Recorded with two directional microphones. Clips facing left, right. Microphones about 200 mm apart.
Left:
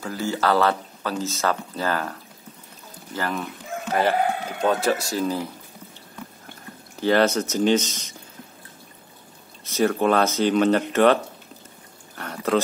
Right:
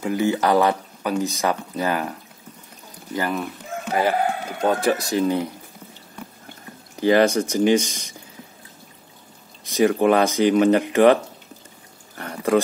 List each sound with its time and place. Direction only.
0.0 s speech: 20° right (ahead or behind)
3.2 s speech: 10° right (ahead or behind)
7.0 s speech: 15° right (ahead or behind)
9.7 s speech: 15° right (ahead or behind)
12.2 s a sound: 10° right (ahead or behind)